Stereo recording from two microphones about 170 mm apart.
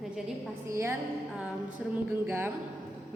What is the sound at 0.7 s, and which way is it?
A woman's voice, 15° right (ahead or behind).